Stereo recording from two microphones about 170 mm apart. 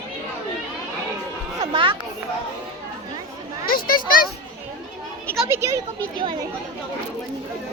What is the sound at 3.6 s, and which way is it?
Children playing, 60° left (ahead or behind).